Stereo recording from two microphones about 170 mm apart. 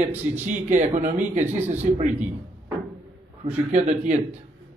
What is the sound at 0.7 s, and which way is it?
A man's voice, 45° right (ahead or behind).